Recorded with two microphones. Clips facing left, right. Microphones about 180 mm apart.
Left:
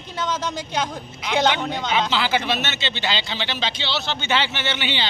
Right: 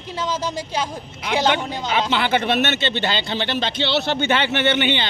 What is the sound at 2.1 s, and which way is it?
Speech, 55° right (ahead or behind).